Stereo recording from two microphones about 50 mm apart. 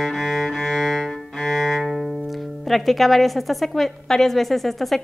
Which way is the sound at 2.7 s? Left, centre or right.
Centre.